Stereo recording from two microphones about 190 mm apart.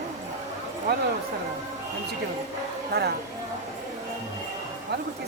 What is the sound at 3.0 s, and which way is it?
Speech, 60° right (ahead or behind).